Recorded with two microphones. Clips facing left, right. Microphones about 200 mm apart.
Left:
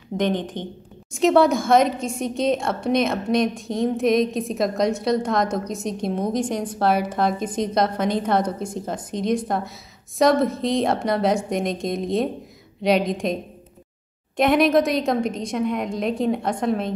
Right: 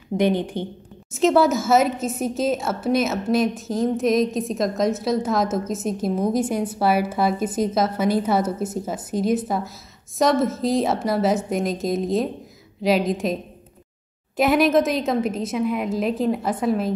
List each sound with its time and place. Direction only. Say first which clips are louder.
0.2 s a woman's voice: right 2 dB; 10° right (ahead or behind)